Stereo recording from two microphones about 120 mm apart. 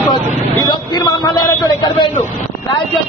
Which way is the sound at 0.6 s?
40° left (ahead or behind).